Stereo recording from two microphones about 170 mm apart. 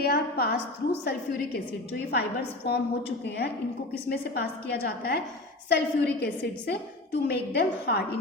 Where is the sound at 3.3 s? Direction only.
80° left.